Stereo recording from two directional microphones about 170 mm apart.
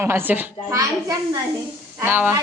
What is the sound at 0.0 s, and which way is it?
A child's voice, 10° right (ahead or behind).